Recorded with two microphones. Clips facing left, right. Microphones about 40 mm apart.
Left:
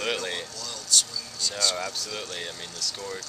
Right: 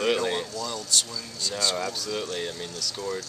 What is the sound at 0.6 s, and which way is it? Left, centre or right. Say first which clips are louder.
Speech: right 1 dB; right.